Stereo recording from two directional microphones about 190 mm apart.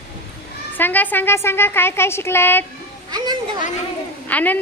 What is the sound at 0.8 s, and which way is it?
A woman's voice, 10° left (ahead or behind).